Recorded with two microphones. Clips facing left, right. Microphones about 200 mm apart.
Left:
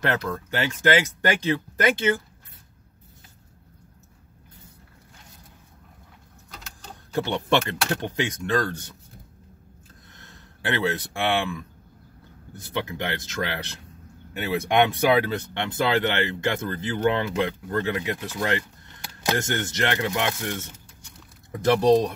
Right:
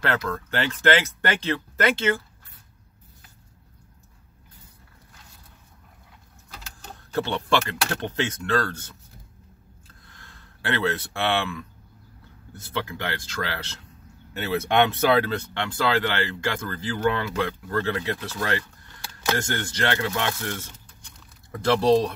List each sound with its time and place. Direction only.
0.0 s speech: 15° left (ahead or behind)
7.2 s speech: 15° left (ahead or behind)
10.0 s a sound: 20° left (ahead or behind)
12.5 s speech: 15° left (ahead or behind)
21.8 s speech: 15° left (ahead or behind)